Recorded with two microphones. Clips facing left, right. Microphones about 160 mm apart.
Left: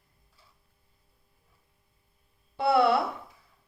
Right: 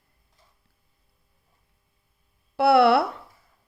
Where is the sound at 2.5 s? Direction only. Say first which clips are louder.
Right 5 dB; 80° right.